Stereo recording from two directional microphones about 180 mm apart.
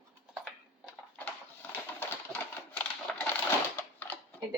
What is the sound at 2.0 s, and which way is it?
Typewriter, 10° left (ahead or behind).